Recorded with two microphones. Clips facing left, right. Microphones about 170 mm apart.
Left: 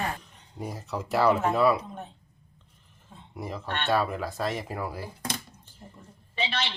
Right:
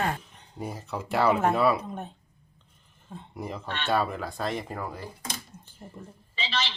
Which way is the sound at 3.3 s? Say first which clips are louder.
Left 1 dB; centre (ahead or behind).